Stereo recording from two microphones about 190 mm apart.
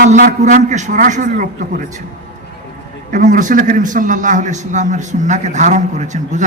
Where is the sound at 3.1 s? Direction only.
40° right (ahead or behind).